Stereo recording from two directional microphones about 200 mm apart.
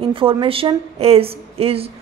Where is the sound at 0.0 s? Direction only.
25° right (ahead or behind).